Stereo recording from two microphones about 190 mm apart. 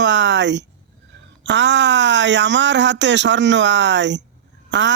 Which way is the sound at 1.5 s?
65° right (ahead or behind).